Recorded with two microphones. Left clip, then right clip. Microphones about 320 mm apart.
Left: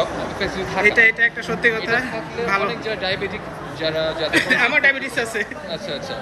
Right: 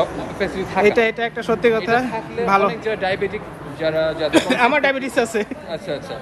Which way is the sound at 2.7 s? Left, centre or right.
Right.